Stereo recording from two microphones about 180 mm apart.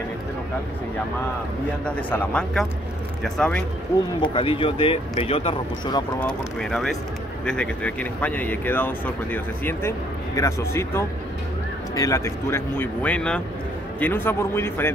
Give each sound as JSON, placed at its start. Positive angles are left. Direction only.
{"t": 1.9, "sound": "speech", "side_deg": 10}
{"t": 4.2, "sound": "speech", "side_deg": 30}
{"t": 6.1, "sound": "speech", "side_deg": 5}